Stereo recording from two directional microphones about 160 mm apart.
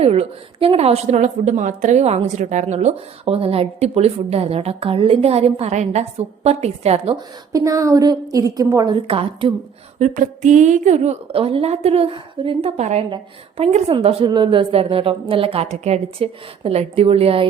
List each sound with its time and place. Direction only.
0.0 s a woman's voice: 40° right (ahead or behind)
7.5 s a woman's voice: 20° right (ahead or behind)
9.0 s a woman's voice: 35° right (ahead or behind)
10.0 s a woman's voice: 50° right (ahead or behind)